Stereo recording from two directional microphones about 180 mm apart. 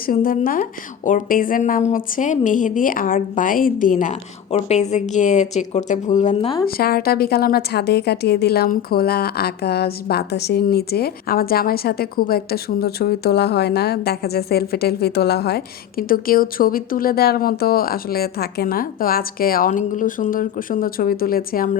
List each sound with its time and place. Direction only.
0.0 s a woman's voice: 50° left (ahead or behind)
6.7 s a woman's voice: 55° left (ahead or behind)